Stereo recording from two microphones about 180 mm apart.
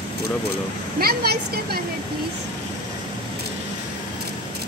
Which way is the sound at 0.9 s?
60° right (ahead or behind).